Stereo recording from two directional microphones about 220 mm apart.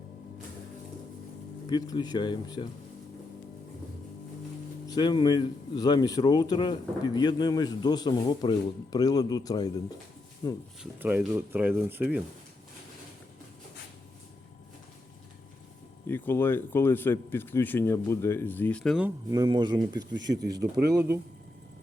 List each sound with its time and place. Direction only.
1.7 s speech: 20° left (ahead or behind)
4.9 s speech: 20° left (ahead or behind)
11.0 s speech: 10° right (ahead or behind)
16.0 s speech: 10° left (ahead or behind)
19.0 s speech: 15° right (ahead or behind)